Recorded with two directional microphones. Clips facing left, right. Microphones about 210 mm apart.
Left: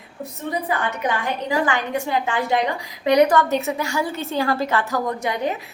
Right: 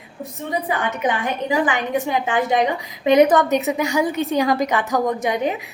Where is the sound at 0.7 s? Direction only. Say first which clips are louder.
Right 2 dB; 20° right (ahead or behind).